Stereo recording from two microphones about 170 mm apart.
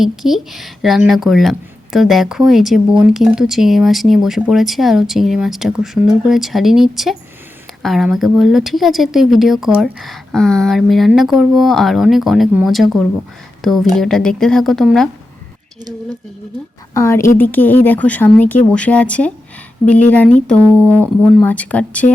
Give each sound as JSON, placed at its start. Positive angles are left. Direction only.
{"t": 0.0, "sound": "speech", "side_deg": 0}
{"t": 16.9, "sound": "speech", "side_deg": 15}